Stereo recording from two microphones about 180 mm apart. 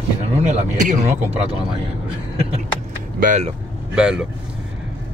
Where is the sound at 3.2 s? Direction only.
40° right (ahead or behind).